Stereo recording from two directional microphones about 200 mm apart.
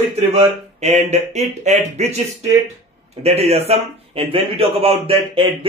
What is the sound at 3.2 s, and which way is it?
A man's voice, 30° right (ahead or behind).